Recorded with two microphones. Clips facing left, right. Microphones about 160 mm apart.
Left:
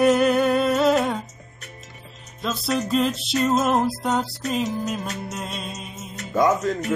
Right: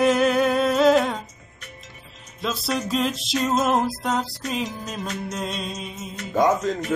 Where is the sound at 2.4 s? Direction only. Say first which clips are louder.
Left 1 dB; centre (ahead or behind).